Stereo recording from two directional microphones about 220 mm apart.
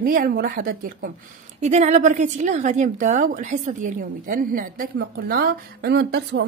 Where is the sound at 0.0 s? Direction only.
40° right (ahead or behind).